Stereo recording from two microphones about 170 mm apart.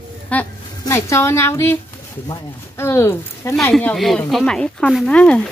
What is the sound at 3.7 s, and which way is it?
Speech, centre (ahead or behind).